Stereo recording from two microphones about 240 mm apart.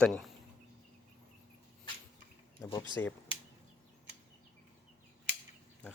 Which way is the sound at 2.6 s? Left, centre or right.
Centre.